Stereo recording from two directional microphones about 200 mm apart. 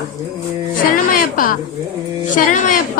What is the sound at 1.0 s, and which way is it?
A woman's voice, 45° left (ahead or behind).